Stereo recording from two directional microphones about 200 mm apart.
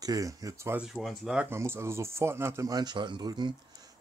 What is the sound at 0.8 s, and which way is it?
Speech, centre (ahead or behind).